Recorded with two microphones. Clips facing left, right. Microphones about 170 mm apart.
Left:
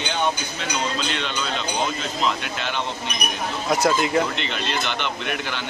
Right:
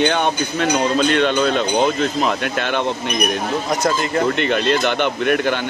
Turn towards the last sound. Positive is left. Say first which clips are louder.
# right 10 dB
turn(degrees=-50)  # may be behind; listen again after turning